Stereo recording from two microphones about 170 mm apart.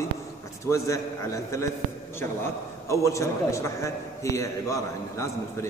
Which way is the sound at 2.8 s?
15° left (ahead or behind).